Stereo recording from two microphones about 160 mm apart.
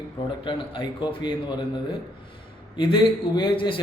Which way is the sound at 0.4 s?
30° left (ahead or behind).